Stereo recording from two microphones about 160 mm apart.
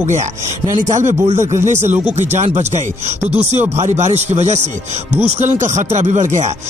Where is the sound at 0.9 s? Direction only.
45° right (ahead or behind).